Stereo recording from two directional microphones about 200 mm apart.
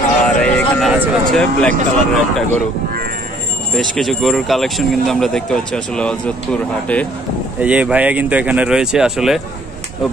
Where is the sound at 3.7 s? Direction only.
Centre (ahead or behind).